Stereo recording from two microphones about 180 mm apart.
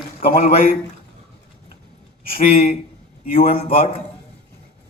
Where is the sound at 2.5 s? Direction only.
35° left (ahead or behind).